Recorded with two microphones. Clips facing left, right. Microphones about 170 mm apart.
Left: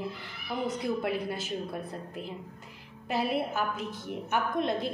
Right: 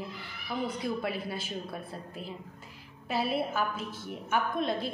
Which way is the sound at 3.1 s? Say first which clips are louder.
Left 1 dB; 15° left (ahead or behind).